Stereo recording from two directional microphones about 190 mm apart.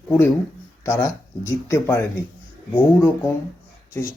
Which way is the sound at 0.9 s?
15° left (ahead or behind).